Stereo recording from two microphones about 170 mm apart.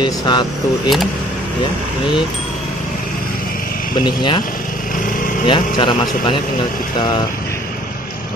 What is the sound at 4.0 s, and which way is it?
Speech, 25° left (ahead or behind).